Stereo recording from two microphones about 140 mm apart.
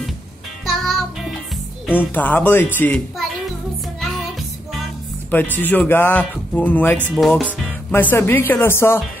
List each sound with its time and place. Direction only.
0.7 s music: centre (ahead or behind)
2.0 s speech: 15° left (ahead or behind)
4.0 s music: centre (ahead or behind)
5.3 s speech: 15° left (ahead or behind)
7.2 s speech: centre (ahead or behind)
7.9 s speech: 15° left (ahead or behind)